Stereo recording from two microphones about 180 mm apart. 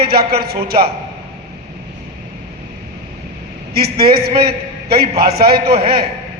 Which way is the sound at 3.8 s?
60° right (ahead or behind).